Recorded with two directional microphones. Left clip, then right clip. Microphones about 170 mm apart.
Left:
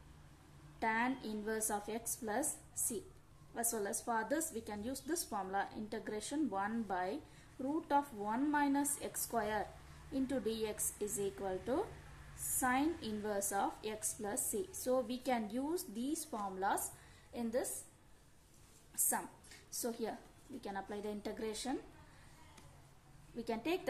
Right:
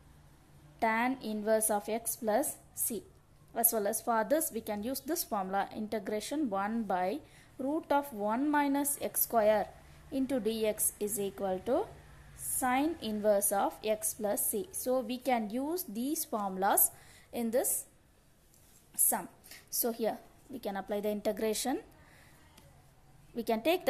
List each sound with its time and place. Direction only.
0.7 s a woman's voice: 40° right (ahead or behind)
3.5 s a woman's voice: 40° right (ahead or behind)
19.0 s a woman's voice: 40° right (ahead or behind)
23.3 s a woman's voice: 40° right (ahead or behind)